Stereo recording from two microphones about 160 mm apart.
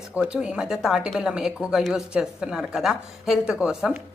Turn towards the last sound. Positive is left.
turn(degrees=-5)  # may be behind; listen again after turning